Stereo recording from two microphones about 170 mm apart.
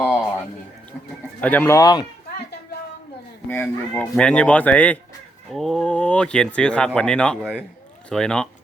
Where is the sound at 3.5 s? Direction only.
10° left (ahead or behind).